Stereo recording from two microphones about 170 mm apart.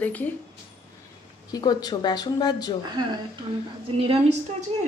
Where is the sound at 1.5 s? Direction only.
25° left (ahead or behind).